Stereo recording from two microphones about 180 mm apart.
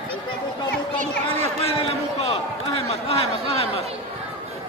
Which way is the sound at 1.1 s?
10° left (ahead or behind).